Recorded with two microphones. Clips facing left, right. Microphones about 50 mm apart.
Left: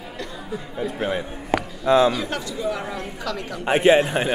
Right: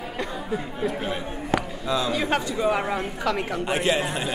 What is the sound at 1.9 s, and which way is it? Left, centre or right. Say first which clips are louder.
Speech: left 9 dB; left.